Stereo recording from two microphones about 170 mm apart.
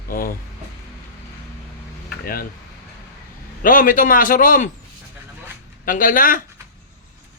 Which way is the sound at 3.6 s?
55° left (ahead or behind).